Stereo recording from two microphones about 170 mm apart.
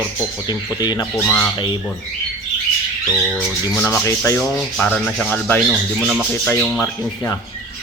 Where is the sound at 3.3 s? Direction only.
10° left (ahead or behind).